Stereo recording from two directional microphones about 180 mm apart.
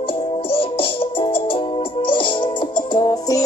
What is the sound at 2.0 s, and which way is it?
Music, 25° left (ahead or behind).